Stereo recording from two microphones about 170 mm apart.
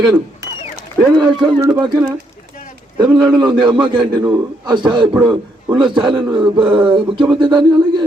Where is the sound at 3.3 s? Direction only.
25° right (ahead or behind).